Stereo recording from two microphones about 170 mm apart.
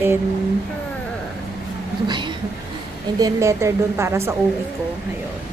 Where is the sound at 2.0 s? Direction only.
25° right (ahead or behind).